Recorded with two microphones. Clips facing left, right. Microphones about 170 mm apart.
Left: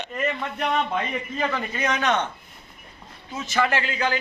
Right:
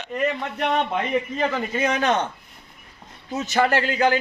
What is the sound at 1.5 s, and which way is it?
Speech, 25° right (ahead or behind).